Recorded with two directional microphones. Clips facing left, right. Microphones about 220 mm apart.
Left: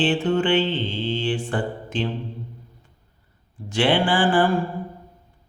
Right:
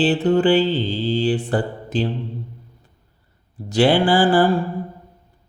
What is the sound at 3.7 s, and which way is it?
Mantra, 40° right (ahead or behind).